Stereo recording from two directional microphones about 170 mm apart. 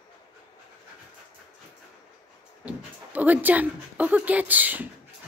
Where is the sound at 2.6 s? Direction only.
10° right (ahead or behind).